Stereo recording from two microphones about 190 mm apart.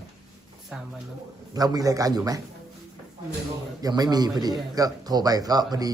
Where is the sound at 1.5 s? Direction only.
20° right (ahead or behind).